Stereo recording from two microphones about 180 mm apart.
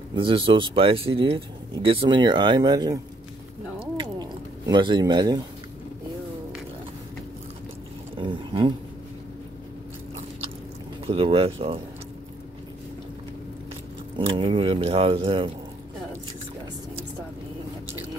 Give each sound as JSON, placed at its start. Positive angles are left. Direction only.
{"t": 0.1, "sound": "speech", "side_deg": -30}
{"t": 3.9, "sound": "a sound", "side_deg": -25}
{"t": 8.2, "sound": "speech", "side_deg": -30}
{"t": 11.1, "sound": "speech", "side_deg": -30}
{"t": 14.1, "sound": "speech", "side_deg": -30}